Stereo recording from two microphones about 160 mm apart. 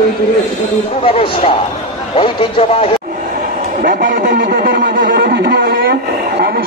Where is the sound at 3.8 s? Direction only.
60° right (ahead or behind).